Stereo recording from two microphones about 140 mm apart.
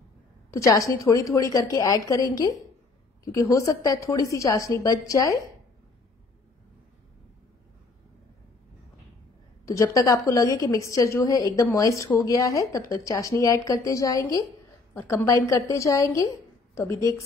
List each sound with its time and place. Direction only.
0.5 s a woman's voice: 20° left (ahead or behind)
9.7 s a woman's voice: 25° left (ahead or behind)
15.0 s a woman's voice: 10° left (ahead or behind)
15.2 s a woman's voice: 25° left (ahead or behind)